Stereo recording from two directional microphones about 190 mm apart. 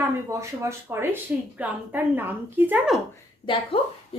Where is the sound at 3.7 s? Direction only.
30° left (ahead or behind).